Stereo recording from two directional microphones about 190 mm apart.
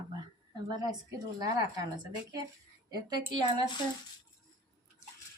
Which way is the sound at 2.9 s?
20° right (ahead or behind).